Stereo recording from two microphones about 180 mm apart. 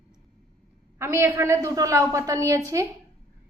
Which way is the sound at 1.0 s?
15° right (ahead or behind).